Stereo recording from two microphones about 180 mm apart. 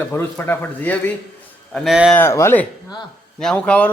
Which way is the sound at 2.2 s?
15° left (ahead or behind).